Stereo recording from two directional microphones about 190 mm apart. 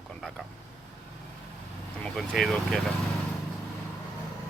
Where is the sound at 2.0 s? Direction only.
5° left (ahead or behind).